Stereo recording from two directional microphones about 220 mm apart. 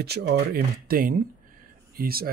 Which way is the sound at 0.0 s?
45° right (ahead or behind).